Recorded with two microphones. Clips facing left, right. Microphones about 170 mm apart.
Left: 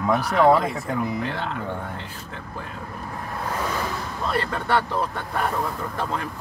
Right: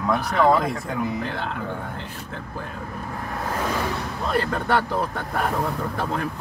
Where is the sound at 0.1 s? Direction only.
5° left (ahead or behind).